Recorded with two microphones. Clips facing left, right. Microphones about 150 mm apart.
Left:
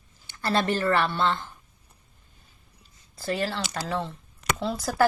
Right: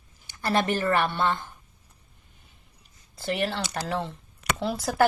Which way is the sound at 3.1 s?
25° right (ahead or behind).